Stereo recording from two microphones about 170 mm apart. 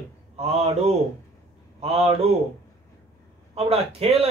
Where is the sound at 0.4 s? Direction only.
40° right (ahead or behind).